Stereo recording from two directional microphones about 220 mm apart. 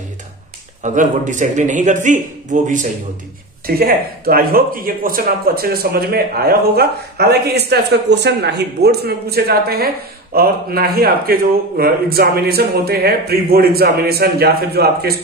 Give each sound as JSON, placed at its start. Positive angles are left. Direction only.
{"t": 0.8, "sound": "a man's voice", "side_deg": -35}